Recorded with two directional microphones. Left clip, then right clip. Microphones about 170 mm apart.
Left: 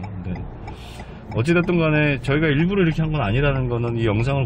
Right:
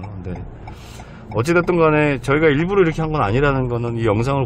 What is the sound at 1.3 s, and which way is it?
Speech, 30° right (ahead or behind).